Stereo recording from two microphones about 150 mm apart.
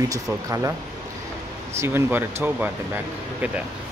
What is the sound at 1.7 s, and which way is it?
Speech, 15° right (ahead or behind).